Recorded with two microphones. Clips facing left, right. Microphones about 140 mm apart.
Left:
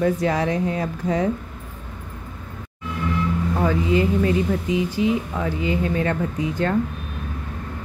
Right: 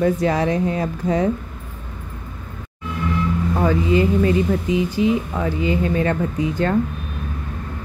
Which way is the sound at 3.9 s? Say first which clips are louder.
Right 3 dB; 30° right (ahead or behind).